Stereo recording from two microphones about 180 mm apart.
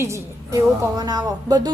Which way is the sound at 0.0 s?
15° right (ahead or behind).